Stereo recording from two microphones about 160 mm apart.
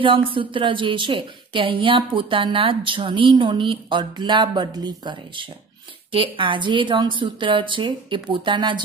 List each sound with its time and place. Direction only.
0.3 s a woman's voice: 30° right (ahead or behind)